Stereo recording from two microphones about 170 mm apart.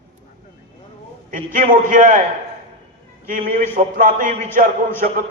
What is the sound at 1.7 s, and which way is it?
Speech, 55° right (ahead or behind).